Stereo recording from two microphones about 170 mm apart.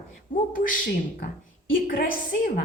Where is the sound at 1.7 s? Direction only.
55° left (ahead or behind).